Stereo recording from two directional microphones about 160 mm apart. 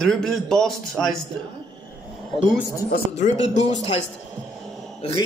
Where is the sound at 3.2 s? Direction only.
50° left (ahead or behind).